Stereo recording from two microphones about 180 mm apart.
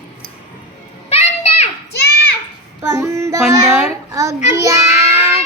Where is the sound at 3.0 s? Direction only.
15° right (ahead or behind).